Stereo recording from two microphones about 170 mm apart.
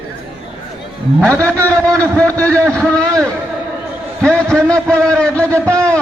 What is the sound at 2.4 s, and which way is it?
Speech, 10° left (ahead or behind).